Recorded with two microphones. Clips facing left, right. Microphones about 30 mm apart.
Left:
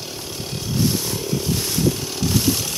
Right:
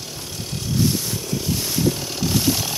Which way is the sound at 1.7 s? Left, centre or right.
Centre.